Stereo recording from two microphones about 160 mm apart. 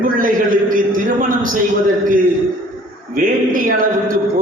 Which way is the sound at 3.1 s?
60° right (ahead or behind).